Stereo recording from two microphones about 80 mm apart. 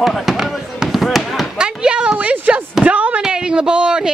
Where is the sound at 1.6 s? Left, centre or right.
Centre.